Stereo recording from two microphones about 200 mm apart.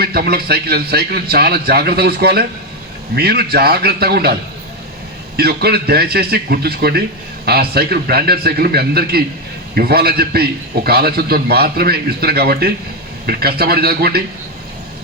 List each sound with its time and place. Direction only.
0.0 s a man's voice: 50° right (ahead or behind)
5.4 s a man's voice: 55° right (ahead or behind)